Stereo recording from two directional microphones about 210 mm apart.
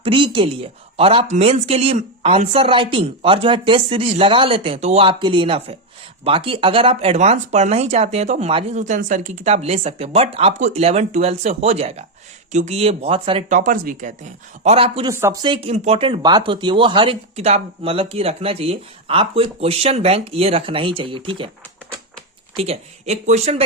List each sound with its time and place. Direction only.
0.0 s speech: 25° right (ahead or behind)
13.5 s speech: 40° right (ahead or behind)
15.1 s speech: 15° right (ahead or behind)
22.5 s speech: 30° right (ahead or behind)